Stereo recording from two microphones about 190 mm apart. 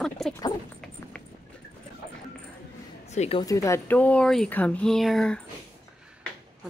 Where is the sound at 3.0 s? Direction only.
35° left (ahead or behind).